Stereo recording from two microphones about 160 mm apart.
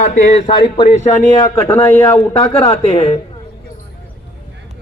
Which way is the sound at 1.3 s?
25° left (ahead or behind).